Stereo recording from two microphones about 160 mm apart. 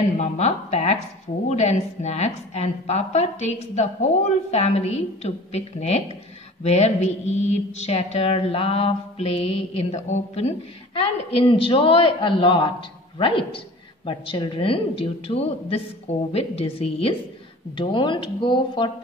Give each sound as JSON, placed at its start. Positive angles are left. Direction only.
{"t": 0.2, "sound": "a woman's voice", "side_deg": 45}
{"t": 6.6, "sound": "mantra", "side_deg": 45}